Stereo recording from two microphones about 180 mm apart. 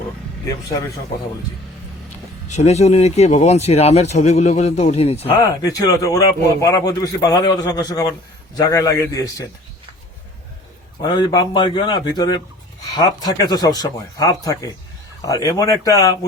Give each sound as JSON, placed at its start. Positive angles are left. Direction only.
{"t": 2.5, "sound": "speech", "side_deg": 40}
{"t": 5.4, "sound": "a man's voice", "side_deg": 20}
{"t": 11.0, "sound": "speech", "side_deg": 25}